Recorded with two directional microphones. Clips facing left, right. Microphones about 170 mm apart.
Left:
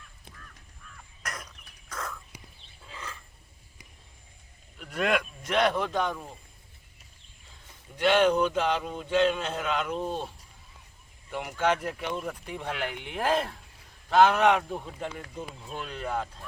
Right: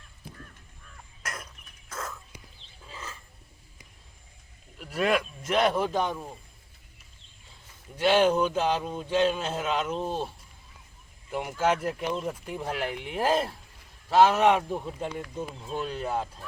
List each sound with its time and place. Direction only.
1.2 s a sound: 5° right (ahead or behind)
2.9 s wild animals: 5° right (ahead or behind)
4.8 s speech: 5° right (ahead or behind)
7.9 s speech: 5° right (ahead or behind)
11.3 s speech: centre (ahead or behind)
12.0 s speech: 25° right (ahead or behind)
12.3 s speech: 5° right (ahead or behind)
12.6 s speech: 35° right (ahead or behind)
13.1 s speech: 5° right (ahead or behind)
15.6 s speech: 35° right (ahead or behind)
16.0 s speech: 10° right (ahead or behind)